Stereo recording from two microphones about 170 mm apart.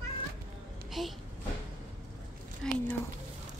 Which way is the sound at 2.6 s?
5° left (ahead or behind).